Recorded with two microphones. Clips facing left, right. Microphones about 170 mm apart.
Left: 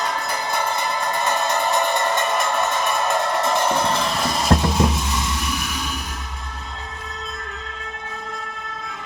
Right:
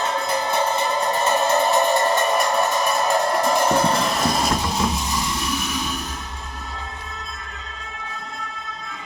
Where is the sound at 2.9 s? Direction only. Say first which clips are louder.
Right 1 dB; 5° right (ahead or behind).